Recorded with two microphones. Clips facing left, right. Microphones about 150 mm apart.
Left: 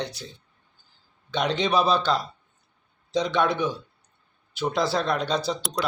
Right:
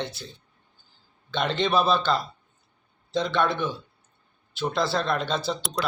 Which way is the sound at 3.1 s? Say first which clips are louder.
Left 1 dB; centre (ahead or behind).